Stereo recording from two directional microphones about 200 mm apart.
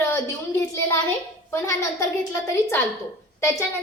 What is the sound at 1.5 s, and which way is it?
A woman's voice, 15° left (ahead or behind).